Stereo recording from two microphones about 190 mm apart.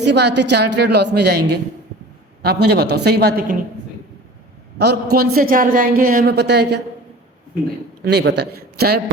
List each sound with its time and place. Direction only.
0.0 s a woman's voice: 65° right (ahead or behind)
4.8 s a man's voice: 55° right (ahead or behind)
8.0 s a woman's voice: 60° right (ahead or behind)